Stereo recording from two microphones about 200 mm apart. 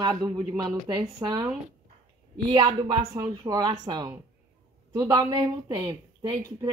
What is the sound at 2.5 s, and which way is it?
A woman's voice, 20° right (ahead or behind).